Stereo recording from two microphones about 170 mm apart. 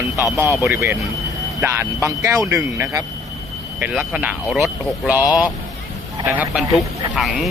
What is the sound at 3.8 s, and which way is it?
Speech, 5° right (ahead or behind).